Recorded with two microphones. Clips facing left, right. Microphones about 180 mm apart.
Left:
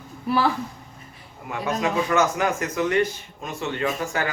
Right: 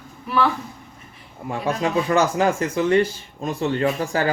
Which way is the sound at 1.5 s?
30° right (ahead or behind).